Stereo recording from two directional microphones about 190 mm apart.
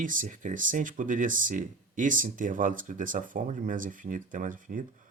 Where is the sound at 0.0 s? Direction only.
45° right (ahead or behind).